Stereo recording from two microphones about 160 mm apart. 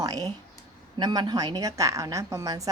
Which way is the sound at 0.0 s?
25° right (ahead or behind).